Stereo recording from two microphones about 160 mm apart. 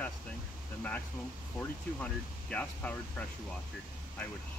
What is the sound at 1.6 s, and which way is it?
Speech, centre (ahead or behind).